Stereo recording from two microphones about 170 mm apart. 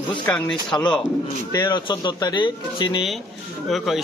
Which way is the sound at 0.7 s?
20° left (ahead or behind).